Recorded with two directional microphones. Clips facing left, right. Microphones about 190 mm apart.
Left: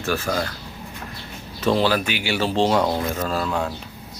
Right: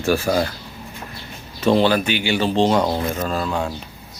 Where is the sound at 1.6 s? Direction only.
Centre (ahead or behind).